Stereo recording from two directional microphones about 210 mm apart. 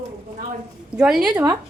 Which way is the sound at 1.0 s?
5° right (ahead or behind).